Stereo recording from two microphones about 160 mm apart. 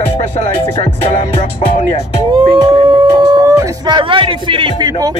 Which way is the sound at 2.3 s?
35° right (ahead or behind).